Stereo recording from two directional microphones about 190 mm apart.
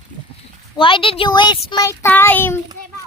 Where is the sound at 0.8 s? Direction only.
25° left (ahead or behind).